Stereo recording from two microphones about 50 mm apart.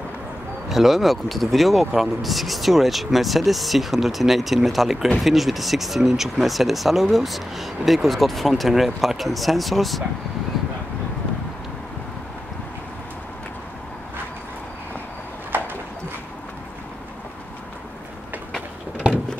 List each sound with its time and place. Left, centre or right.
0.7 s speech: centre
15.5 s horse: right